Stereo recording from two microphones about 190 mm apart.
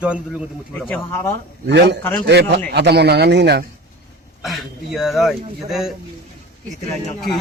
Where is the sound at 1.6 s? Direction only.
65° right (ahead or behind).